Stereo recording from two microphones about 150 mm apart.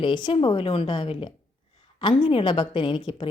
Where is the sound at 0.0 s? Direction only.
35° left (ahead or behind).